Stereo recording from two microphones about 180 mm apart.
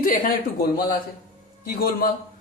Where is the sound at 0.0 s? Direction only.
55° left (ahead or behind).